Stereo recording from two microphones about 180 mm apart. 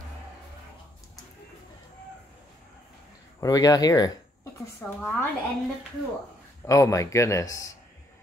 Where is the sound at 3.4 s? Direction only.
20° left (ahead or behind).